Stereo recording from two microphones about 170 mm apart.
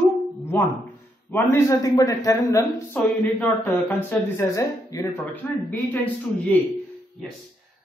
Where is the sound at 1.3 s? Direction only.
15° left (ahead or behind).